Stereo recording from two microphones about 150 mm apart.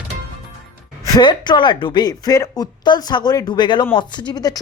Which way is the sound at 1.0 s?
30° left (ahead or behind).